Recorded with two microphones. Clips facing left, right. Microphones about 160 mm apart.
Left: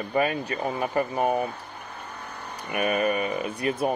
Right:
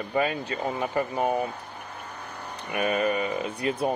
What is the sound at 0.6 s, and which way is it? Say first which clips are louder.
Speech: left 1 dB; 25° left (ahead or behind).